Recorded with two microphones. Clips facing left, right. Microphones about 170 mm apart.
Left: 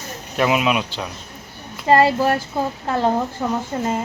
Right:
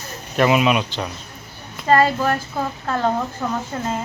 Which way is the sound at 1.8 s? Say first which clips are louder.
Left 2 dB; 10° left (ahead or behind).